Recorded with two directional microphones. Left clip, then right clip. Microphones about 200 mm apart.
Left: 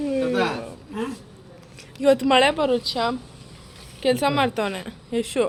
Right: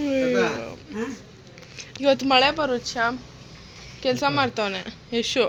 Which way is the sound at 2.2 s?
15° left (ahead or behind).